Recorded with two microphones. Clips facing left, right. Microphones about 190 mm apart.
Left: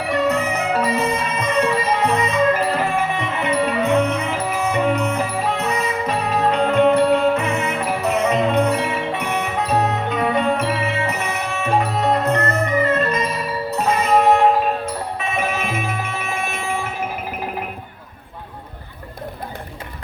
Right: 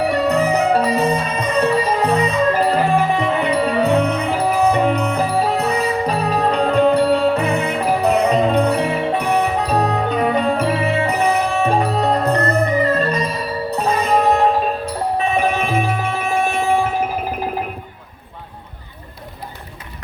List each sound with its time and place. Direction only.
0.0 s music: 35° right (ahead or behind)